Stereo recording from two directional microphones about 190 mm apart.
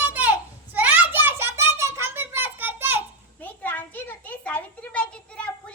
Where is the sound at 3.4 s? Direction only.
10° left (ahead or behind).